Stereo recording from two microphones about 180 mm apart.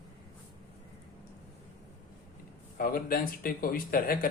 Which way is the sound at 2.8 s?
55° left (ahead or behind).